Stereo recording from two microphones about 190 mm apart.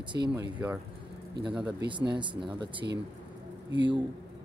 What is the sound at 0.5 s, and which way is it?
Speech, 10° right (ahead or behind).